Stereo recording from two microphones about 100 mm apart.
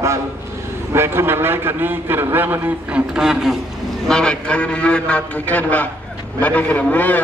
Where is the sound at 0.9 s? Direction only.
25° right (ahead or behind).